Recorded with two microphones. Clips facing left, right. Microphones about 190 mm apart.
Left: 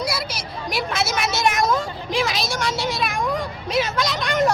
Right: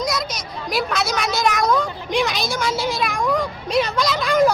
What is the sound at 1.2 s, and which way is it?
Vehicle, 5° left (ahead or behind).